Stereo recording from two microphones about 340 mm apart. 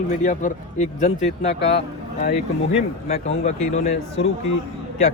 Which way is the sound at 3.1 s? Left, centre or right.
Centre.